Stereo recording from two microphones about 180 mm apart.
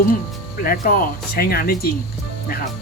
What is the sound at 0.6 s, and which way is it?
Speech, 55° left (ahead or behind).